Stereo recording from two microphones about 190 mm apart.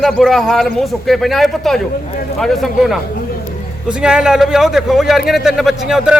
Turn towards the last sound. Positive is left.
turn(degrees=0)  # may be behind; listen again after turning